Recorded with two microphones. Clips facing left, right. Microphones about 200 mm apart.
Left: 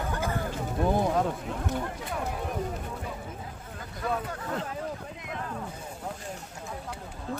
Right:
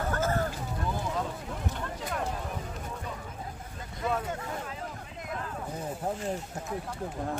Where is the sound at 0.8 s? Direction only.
60° left (ahead or behind).